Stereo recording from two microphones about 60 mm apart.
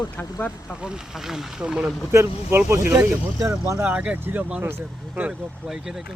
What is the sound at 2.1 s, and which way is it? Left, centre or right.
Speech, right.